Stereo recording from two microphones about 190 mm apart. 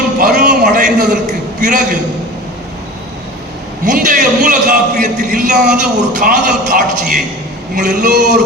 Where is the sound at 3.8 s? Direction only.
45° right (ahead or behind).